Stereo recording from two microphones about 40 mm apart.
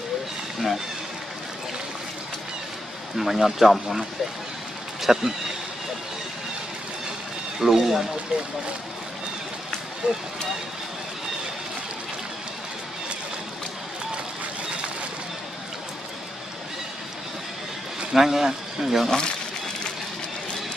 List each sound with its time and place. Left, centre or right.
3.2 s speech: centre
5.0 s speech: centre
7.6 s speech: centre
10.0 s speech: right
18.1 s speech: centre
19.0 s speech: centre